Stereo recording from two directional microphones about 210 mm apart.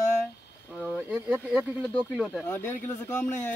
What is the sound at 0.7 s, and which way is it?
Speech, centre (ahead or behind).